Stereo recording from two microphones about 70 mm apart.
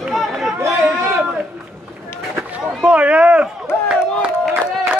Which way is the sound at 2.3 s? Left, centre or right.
Right.